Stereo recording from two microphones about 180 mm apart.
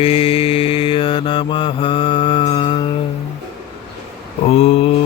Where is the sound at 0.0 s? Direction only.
30° left (ahead or behind).